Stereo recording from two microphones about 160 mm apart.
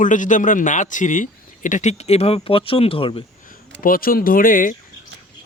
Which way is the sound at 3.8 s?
65° left (ahead or behind).